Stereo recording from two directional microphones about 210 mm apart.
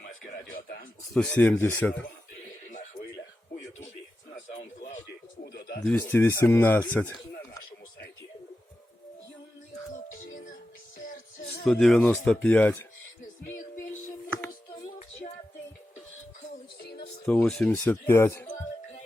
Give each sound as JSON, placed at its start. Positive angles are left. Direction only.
{"t": 0.3, "sound": "a sound", "side_deg": 45}
{"t": 1.1, "sound": "speech", "side_deg": 5}
{"t": 4.5, "sound": "a sound", "side_deg": 35}
{"t": 5.4, "sound": "bird", "side_deg": 45}
{"t": 5.8, "sound": "speech", "side_deg": 10}
{"t": 11.0, "sound": "music", "side_deg": 45}
{"t": 11.6, "sound": "speech", "side_deg": 5}
{"t": 17.2, "sound": "speech", "side_deg": 5}